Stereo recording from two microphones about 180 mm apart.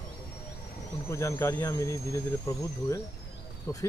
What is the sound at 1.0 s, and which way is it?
Speech, 15° left (ahead or behind).